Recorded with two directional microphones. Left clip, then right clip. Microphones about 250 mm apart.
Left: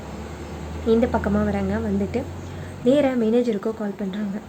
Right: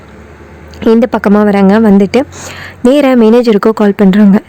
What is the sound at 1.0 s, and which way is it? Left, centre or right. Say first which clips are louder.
Speech: right 13 dB; right.